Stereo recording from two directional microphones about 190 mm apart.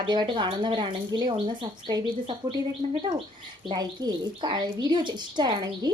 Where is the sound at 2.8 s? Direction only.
40° right (ahead or behind).